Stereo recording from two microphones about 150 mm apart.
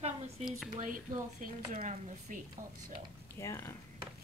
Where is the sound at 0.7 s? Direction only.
65° right (ahead or behind).